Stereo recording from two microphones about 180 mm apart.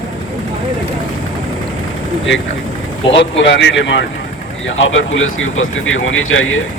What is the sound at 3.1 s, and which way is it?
Speech, 90° left.